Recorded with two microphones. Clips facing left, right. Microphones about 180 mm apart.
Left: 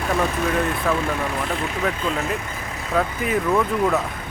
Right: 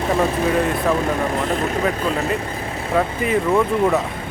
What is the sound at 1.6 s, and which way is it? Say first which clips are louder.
Speech: right 4 dB; 45° right (ahead or behind).